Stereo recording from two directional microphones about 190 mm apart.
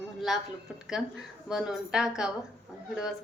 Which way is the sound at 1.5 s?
Centre (ahead or behind).